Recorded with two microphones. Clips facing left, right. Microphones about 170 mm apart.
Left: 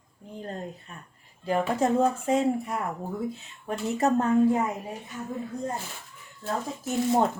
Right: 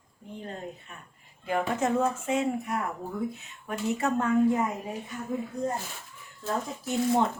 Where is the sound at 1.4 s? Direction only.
35° left (ahead or behind).